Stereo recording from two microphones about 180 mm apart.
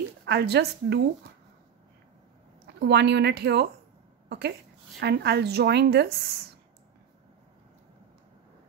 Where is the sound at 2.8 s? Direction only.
70° right (ahead or behind).